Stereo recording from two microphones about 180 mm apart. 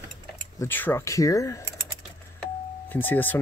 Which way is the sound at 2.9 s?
10° left (ahead or behind).